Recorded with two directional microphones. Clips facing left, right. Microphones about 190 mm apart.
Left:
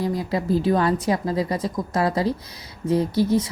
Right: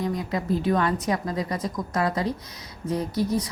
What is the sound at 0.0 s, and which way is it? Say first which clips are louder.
A woman's voice: left 3 dB; 30° left (ahead or behind).